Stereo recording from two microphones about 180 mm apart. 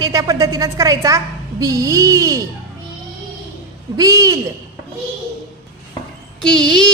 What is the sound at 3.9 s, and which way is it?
Speech, 20° right (ahead or behind).